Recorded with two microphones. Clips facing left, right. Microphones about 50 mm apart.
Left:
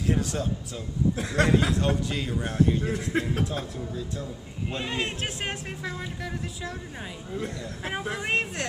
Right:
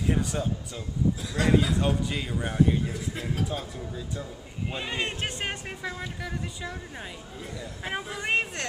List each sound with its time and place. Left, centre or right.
0.0 s speech: centre
1.1 s a man's voice: left
1.7 s a man's voice: centre
2.9 s a man's voice: left
4.7 s a man's voice: centre
8.2 s a man's voice: centre